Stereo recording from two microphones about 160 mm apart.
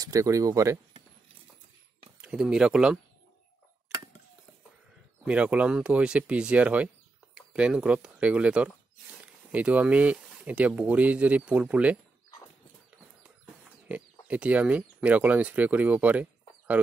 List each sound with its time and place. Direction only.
0.0 s speech: 20° right (ahead or behind)
2.2 s speech: 5° right (ahead or behind)
5.2 s speech: 5° right (ahead or behind)
14.2 s speech: 10° right (ahead or behind)